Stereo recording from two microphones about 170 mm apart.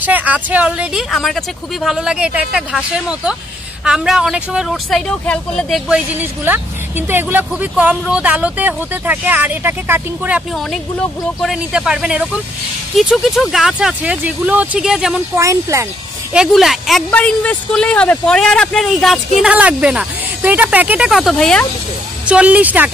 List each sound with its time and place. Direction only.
0.0 s speech: 10° right (ahead or behind)
5.9 s a woman's voice: 10° right (ahead or behind)
10.7 s speech: centre (ahead or behind)
15.3 s a woman's voice: 15° right (ahead or behind)
16.3 s speech: centre (ahead or behind)
22.2 s a woman's voice: 5° right (ahead or behind)